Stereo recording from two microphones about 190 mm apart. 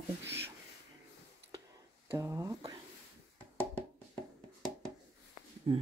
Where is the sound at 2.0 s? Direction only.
15° right (ahead or behind).